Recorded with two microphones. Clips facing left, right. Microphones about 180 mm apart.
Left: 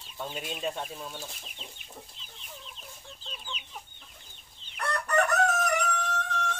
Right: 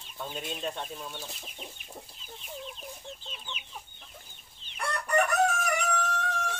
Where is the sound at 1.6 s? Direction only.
15° right (ahead or behind).